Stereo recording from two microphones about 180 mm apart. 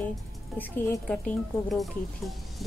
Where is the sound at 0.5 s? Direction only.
10° left (ahead or behind).